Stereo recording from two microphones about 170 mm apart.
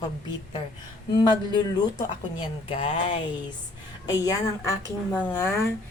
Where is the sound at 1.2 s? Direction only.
25° left (ahead or behind).